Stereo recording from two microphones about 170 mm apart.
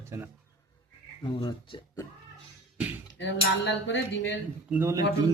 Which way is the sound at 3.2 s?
90° left.